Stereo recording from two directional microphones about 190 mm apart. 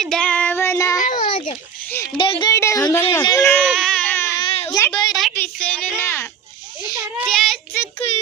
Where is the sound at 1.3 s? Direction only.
40° left (ahead or behind).